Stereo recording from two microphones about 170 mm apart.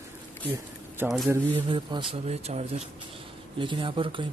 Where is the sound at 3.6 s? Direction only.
30° right (ahead or behind).